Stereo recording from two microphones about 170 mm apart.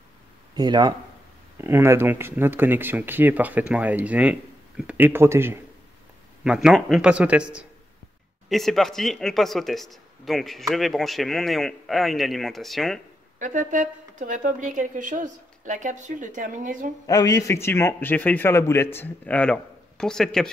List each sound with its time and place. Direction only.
0.6 s speech: 25° right (ahead or behind); by 13.0 s centre (ahead or behind)
13.4 s a woman's voice: 50° right (ahead or behind)
17.0 s a man's voice: 20° left (ahead or behind); by 20.4 s 5° left (ahead or behind)